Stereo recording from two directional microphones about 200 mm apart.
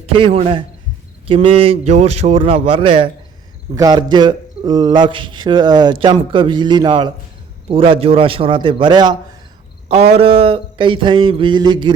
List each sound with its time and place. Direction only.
0.0 s a man's voice: 25° right (ahead or behind)